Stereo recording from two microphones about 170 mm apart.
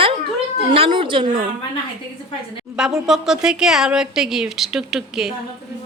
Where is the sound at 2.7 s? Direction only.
5° right (ahead or behind).